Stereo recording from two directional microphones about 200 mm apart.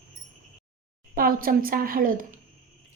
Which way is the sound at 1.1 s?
45° right (ahead or behind).